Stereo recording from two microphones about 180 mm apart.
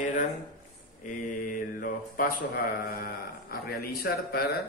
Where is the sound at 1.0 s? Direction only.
45° left (ahead or behind).